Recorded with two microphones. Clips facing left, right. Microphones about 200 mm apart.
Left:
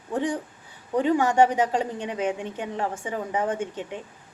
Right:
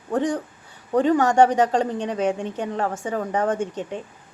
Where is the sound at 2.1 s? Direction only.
40° right (ahead or behind).